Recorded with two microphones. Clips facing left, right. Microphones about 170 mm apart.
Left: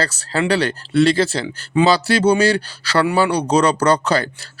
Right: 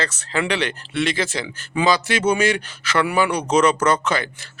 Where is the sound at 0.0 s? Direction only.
35° left (ahead or behind).